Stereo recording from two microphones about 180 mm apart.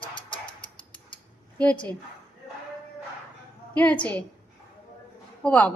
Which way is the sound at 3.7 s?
10° left (ahead or behind).